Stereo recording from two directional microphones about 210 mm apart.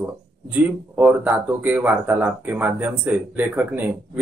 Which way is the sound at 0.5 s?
5° right (ahead or behind).